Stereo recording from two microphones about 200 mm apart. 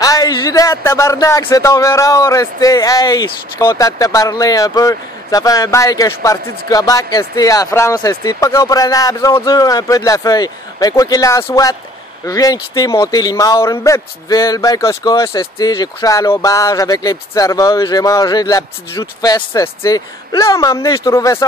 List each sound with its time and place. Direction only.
0.0 s speech: 20° left (ahead or behind)